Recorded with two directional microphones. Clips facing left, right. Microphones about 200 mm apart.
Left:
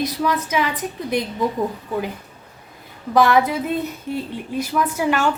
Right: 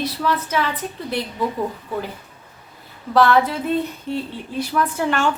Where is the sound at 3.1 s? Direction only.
10° left (ahead or behind).